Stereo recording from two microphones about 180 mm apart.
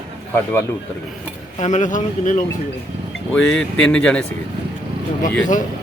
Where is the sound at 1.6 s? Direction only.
40° left (ahead or behind).